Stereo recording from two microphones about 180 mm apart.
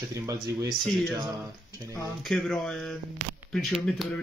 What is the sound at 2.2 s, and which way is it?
Speech, centre (ahead or behind).